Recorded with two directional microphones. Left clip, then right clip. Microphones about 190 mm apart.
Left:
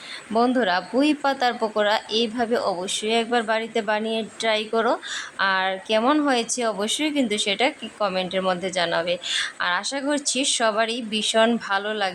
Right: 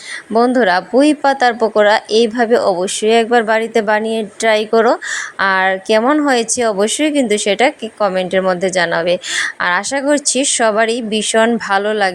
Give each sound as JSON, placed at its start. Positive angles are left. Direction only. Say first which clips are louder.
{"t": 0.3, "sound": "a woman's voice", "louder": "right 8 dB", "side_deg": -25}